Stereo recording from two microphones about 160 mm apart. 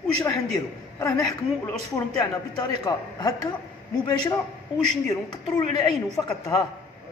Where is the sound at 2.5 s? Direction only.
25° left (ahead or behind).